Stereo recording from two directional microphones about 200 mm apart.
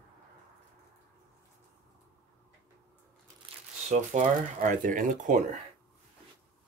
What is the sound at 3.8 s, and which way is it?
Speech, 35° right (ahead or behind).